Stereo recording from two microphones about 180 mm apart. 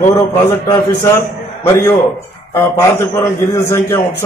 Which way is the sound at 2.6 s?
15° left (ahead or behind).